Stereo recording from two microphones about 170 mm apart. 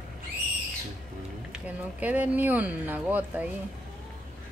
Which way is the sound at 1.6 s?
10° right (ahead or behind).